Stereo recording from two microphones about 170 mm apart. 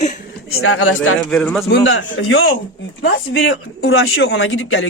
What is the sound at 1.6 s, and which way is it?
Speech, 90° left.